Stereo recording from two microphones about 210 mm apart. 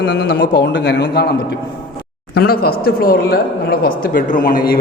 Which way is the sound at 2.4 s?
45° left (ahead or behind).